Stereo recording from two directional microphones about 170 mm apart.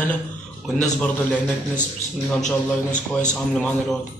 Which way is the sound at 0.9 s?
5° left (ahead or behind).